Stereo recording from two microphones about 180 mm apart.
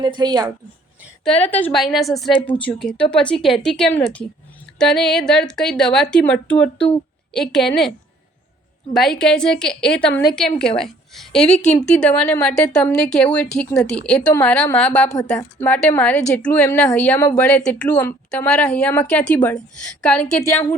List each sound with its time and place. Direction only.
0.0 s a woman's voice: 25° right (ahead or behind)
1.5 s a woman's voice: 10° left (ahead or behind)